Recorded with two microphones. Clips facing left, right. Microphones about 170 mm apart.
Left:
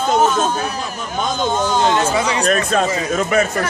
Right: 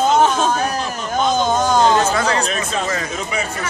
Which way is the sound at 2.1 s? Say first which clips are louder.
Even; 10° left (ahead or behind).